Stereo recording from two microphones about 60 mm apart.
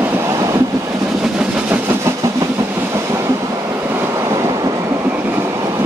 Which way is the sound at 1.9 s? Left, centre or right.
Right.